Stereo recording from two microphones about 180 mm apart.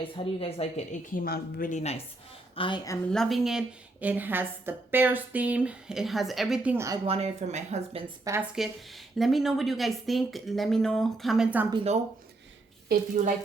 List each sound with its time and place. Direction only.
0.3 s a woman's voice: 30° left (ahead or behind)
1.1 s a woman's voice: 55° left (ahead or behind); by 2.0 s 35° left (ahead or behind)
2.6 s a woman's voice: 25° left (ahead or behind)
3.1 s a woman's voice: centre (ahead or behind); by 7.0 s 15° right (ahead or behind)
7.0 s speech: 35° right (ahead or behind)
8.2 s a woman's voice: 15° right (ahead or behind)
9.1 s speech: centre (ahead or behind)
11.7 s speech: 30° right (ahead or behind)
12.9 s a woman's voice: 45° right (ahead or behind)